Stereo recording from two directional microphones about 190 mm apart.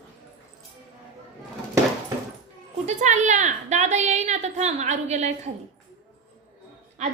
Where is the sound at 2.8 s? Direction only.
40° right (ahead or behind).